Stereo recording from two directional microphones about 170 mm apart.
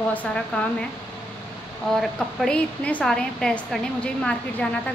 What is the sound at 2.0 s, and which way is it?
A woman's voice, 5° left (ahead or behind).